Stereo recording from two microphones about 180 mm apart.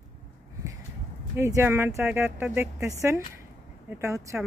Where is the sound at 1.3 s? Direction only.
15° right (ahead or behind).